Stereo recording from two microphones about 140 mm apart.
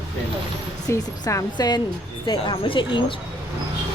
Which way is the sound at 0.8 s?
25° left (ahead or behind).